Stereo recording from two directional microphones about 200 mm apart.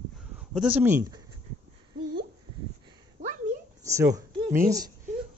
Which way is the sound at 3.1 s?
40° right (ahead or behind).